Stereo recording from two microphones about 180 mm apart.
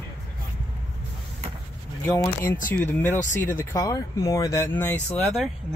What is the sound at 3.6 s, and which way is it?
Speech, 20° left (ahead or behind).